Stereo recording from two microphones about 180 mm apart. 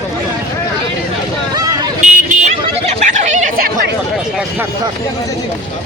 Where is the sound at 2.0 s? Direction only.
45° right (ahead or behind).